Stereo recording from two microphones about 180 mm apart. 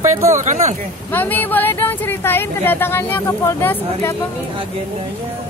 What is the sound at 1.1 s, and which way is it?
Speech, 10° left (ahead or behind).